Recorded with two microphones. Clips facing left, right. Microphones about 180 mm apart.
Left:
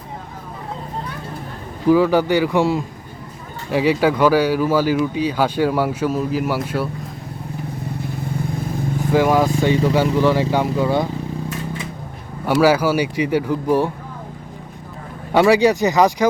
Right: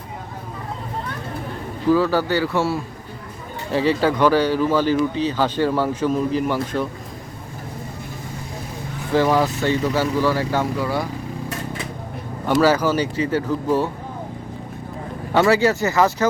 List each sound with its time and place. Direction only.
1.9 s speech: 15° left (ahead or behind)
9.1 s speech: 10° left (ahead or behind)
12.5 s speech: 10° left (ahead or behind)
15.3 s speech: 15° left (ahead or behind)